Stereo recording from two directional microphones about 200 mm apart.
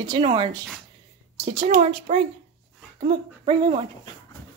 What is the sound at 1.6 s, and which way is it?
Speech, 35° right (ahead or behind).